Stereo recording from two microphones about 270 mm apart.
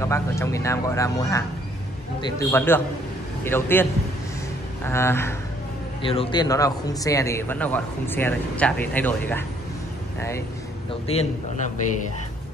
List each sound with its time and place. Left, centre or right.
0.0 s a man's voice: centre
4.8 s a man's voice: centre
10.9 s a man's voice: left